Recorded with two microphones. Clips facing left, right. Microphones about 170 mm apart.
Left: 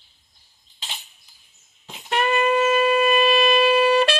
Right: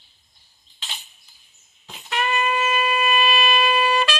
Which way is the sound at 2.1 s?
55° left (ahead or behind).